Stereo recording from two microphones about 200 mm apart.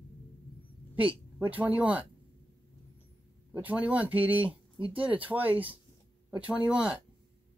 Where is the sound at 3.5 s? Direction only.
5° right (ahead or behind).